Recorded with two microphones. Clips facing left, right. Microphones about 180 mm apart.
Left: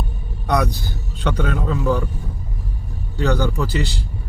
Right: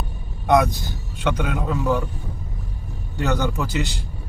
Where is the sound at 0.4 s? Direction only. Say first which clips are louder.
Right 3 dB; 20° right (ahead or behind).